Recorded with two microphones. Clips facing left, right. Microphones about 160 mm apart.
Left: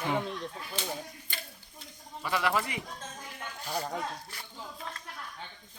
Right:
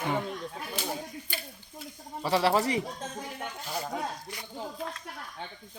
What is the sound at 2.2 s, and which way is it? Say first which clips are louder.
Speech: right 5 dB; 35° right (ahead or behind).